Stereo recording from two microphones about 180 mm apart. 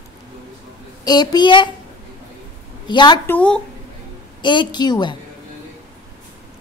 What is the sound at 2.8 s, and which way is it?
Speech, 25° left (ahead or behind).